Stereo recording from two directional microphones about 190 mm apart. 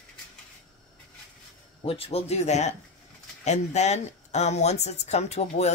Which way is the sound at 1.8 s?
30° left (ahead or behind).